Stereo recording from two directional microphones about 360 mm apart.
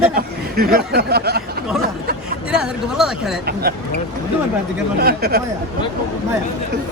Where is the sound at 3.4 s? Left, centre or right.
Right.